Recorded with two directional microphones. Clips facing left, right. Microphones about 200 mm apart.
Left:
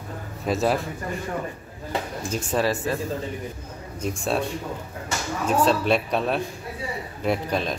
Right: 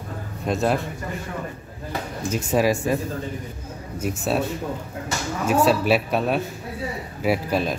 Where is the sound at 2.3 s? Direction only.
10° right (ahead or behind).